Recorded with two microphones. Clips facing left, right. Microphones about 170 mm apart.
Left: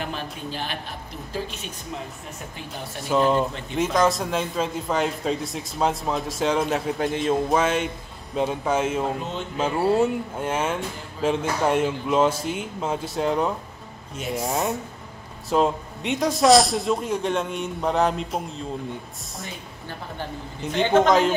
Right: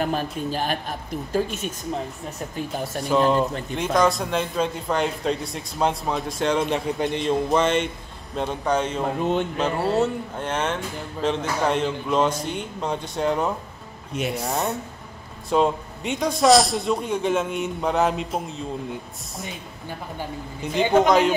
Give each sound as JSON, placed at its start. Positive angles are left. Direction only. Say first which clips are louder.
{"t": 0.0, "sound": "a woman's voice", "louder": "right 6 dB", "side_deg": -45}
{"t": 3.0, "sound": "a man's voice", "louder": "right 1 dB", "side_deg": 0}
{"t": 14.1, "sound": "speech", "louder": "right 3 dB", "side_deg": -70}
{"t": 14.4, "sound": "a man's voice", "louder": "left 1 dB", "side_deg": 5}
{"t": 19.4, "sound": "speech", "louder": "right 2 dB", "side_deg": -15}
{"t": 21.1, "sound": "a man's voice", "louder": "right 1 dB", "side_deg": 0}